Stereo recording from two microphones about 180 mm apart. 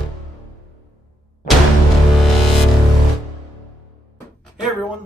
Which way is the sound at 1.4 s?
50° left (ahead or behind).